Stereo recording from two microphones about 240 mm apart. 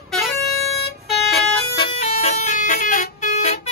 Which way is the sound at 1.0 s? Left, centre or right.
Centre.